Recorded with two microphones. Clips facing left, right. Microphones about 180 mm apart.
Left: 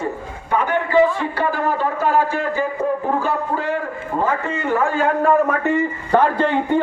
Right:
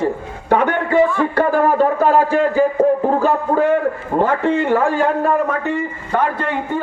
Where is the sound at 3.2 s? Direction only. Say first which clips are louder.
Right 6 dB; 50° right (ahead or behind).